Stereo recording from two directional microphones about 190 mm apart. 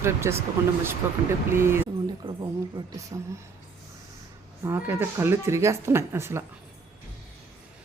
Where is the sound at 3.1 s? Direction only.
20° right (ahead or behind).